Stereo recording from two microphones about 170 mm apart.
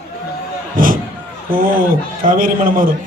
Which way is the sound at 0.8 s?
55° right (ahead or behind).